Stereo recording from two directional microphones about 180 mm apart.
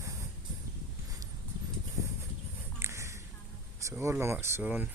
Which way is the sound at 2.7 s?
15° right (ahead or behind).